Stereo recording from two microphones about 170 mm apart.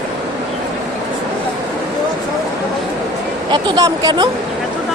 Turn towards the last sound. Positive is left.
turn(degrees=-25)  # may be behind; listen again after turning